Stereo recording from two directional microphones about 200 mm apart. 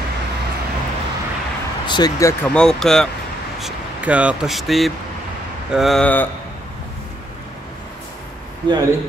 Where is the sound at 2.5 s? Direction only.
Centre (ahead or behind).